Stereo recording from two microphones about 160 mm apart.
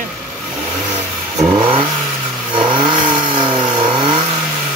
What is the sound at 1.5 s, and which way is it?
Vehicle, 30° right (ahead or behind).